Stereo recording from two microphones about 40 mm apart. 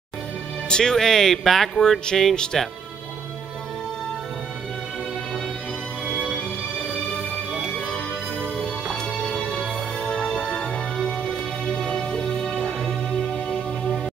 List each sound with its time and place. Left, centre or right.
0.7 s speech: centre
9.6 s music: centre